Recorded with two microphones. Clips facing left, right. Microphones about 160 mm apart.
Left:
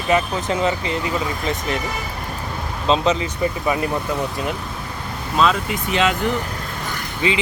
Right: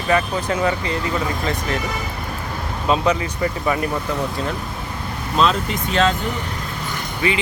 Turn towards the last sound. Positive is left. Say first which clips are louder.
# even
turn(degrees=20)  # may be behind; listen again after turning